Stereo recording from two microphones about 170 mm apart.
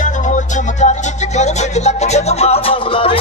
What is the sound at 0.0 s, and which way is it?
Music, 45° left (ahead or behind).